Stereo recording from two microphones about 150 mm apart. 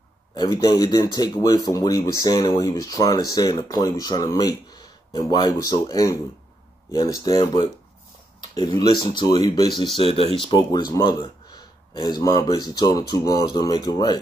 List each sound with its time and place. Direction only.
0.3 s speech: 25° left (ahead or behind)